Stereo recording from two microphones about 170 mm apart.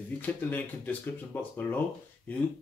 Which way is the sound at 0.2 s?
10° left (ahead or behind).